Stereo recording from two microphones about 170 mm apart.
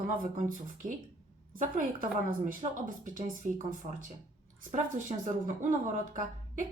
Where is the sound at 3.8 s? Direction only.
40° right (ahead or behind).